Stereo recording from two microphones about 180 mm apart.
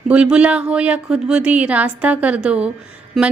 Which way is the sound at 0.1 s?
5° right (ahead or behind).